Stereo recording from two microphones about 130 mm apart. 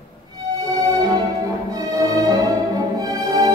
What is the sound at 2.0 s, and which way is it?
Music, 25° right (ahead or behind).